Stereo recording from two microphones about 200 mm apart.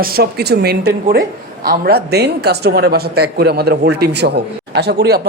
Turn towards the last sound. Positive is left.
turn(degrees=-50)  # may be behind; listen again after turning